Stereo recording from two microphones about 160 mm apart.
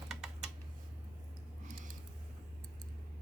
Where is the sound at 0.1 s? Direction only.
Centre (ahead or behind).